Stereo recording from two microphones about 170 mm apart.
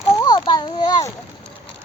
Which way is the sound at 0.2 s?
25° left (ahead or behind).